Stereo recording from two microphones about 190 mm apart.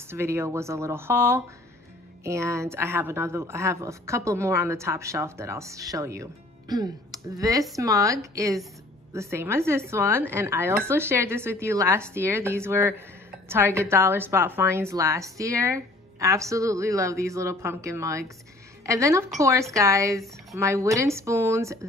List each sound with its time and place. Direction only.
0.1 s a woman's voice: 15° right (ahead or behind)